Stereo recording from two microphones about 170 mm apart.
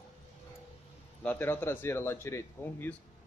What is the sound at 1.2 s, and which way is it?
A man's voice, 10° left (ahead or behind).